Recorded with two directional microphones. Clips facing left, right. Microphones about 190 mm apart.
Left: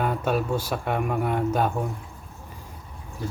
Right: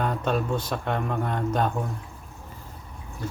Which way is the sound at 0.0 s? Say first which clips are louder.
Left 1 dB; 5° left (ahead or behind).